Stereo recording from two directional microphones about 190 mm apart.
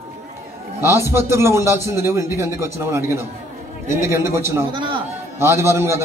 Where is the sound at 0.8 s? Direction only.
15° right (ahead or behind).